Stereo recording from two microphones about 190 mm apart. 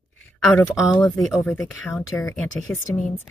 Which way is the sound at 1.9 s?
15° left (ahead or behind).